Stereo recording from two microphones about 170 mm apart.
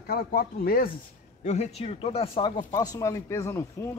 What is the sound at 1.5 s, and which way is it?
Speech, 40° left (ahead or behind).